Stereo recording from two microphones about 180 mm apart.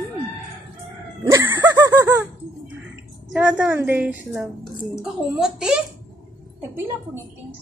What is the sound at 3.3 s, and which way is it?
A woman's voice, 10° right (ahead or behind).